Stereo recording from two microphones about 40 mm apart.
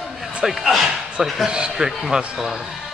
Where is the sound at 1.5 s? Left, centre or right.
Right.